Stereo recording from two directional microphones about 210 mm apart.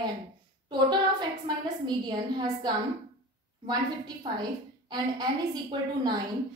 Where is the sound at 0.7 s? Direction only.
20° right (ahead or behind).